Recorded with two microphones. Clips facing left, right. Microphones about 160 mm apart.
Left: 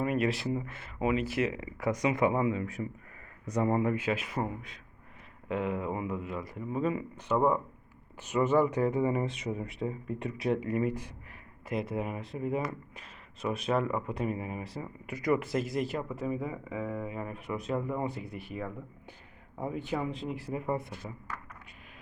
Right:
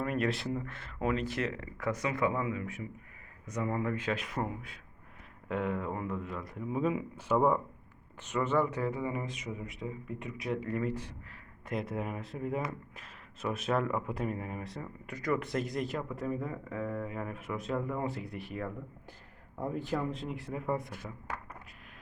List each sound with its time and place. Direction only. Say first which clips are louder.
0.0 s speech: left 3 dB; 5° left (ahead or behind); by 3.8 s 30° left (ahead or behind)
3.8 s speech: left 3 dB; 10° left (ahead or behind)
8.2 s speech: left 4 dB; 10° left (ahead or behind)
9.0 s speech: left 6 dB; 30° left (ahead or behind)
10.6 s speech: left 3 dB; 15° left (ahead or behind)
11.7 s speech: left 2 dB; centre (ahead or behind)